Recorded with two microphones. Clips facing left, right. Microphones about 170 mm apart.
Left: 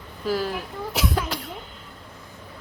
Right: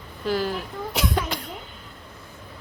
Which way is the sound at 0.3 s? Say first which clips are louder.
Even; centre (ahead or behind).